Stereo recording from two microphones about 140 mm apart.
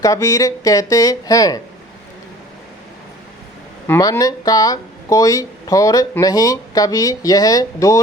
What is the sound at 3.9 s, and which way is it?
Speech, 20° left (ahead or behind).